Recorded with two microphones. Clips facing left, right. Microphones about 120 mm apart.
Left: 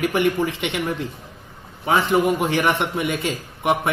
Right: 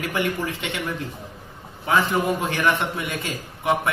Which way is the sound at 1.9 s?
25° left (ahead or behind).